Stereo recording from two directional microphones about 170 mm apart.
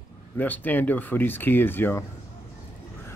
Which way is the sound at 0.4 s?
10° left (ahead or behind).